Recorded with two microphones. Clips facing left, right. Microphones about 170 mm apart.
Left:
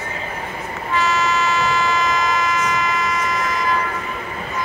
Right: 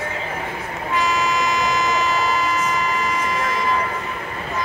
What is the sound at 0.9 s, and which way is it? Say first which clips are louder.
Vehicle: left 1 dB; 15° right (ahead or behind).